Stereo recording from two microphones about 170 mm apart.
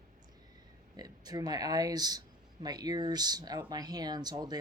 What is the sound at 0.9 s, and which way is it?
Speech, 20° right (ahead or behind).